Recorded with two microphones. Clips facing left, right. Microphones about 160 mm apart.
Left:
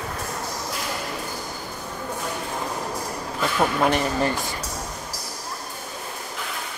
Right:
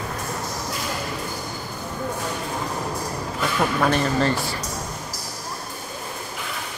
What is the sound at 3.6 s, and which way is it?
Speech, 20° left (ahead or behind).